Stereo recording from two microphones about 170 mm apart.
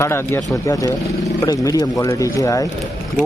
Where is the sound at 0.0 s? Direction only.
15° left (ahead or behind).